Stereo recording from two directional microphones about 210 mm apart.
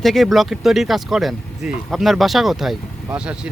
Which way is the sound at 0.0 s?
Centre (ahead or behind).